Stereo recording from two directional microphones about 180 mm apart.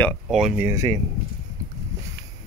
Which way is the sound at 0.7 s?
15° right (ahead or behind).